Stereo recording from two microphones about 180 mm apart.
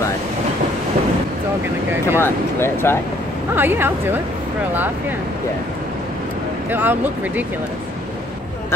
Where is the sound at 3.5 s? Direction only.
10° right (ahead or behind).